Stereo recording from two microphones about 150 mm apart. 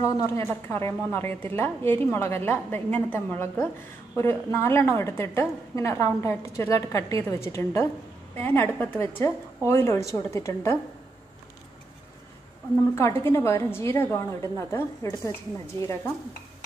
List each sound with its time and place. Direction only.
0.0 s a woman's voice: 20° left (ahead or behind)
12.9 s a woman's voice: 15° left (ahead or behind)